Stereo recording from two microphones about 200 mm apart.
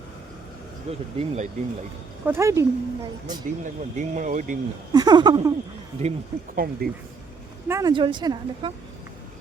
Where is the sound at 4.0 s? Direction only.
40° right (ahead or behind).